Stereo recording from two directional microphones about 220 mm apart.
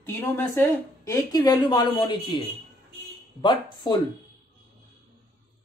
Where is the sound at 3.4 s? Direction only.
20° left (ahead or behind).